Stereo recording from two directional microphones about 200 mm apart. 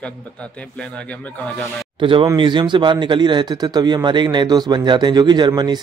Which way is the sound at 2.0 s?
25° right (ahead or behind).